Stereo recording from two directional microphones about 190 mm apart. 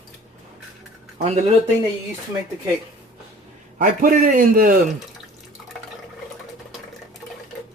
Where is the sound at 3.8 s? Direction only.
45° right (ahead or behind).